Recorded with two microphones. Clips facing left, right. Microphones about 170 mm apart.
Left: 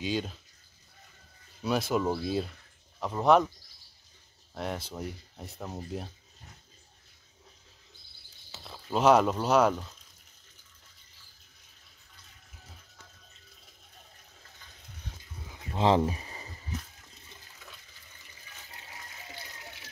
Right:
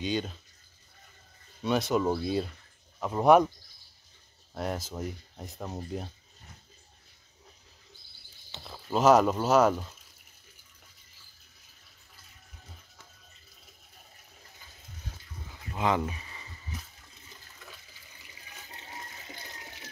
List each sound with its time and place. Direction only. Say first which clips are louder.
0.0 s speech: right 1 dB; centre (ahead or behind)
1.6 s speech: right 1 dB; centre (ahead or behind)
3.0 s speech: right 2 dB; 10° right (ahead or behind)
4.6 s speech: right 2 dB; centre (ahead or behind)
8.5 s speech: right 1 dB; centre (ahead or behind)
15.6 s a sound: left 4 dB; 30° left (ahead or behind)